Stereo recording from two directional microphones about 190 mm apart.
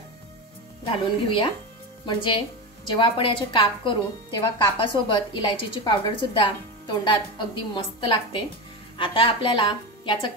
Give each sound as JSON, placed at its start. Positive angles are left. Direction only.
{"t": 0.8, "sound": "a woman's voice", "side_deg": 25}